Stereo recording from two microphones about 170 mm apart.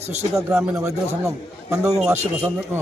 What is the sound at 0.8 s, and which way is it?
A man's voice, 20° right (ahead or behind).